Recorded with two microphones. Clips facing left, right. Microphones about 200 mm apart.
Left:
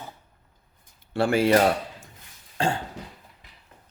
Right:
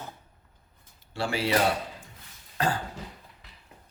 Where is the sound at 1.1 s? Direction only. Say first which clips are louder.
Left 7 dB; 55° left (ahead or behind).